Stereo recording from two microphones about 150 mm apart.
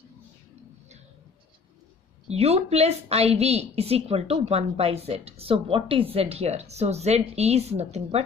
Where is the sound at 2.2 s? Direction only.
45° right (ahead or behind).